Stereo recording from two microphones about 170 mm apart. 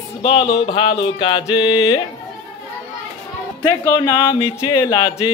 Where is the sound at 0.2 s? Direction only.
30° left (ahead or behind).